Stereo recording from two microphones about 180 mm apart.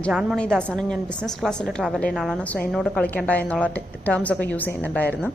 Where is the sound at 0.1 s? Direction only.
5° right (ahead or behind).